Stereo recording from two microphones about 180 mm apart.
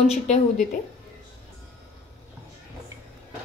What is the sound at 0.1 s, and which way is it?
Speech, 40° left (ahead or behind).